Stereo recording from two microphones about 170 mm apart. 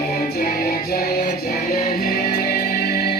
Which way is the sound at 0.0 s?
60° left (ahead or behind).